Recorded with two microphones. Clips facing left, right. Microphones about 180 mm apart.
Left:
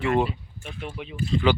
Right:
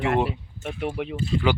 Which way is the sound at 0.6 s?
60° right (ahead or behind).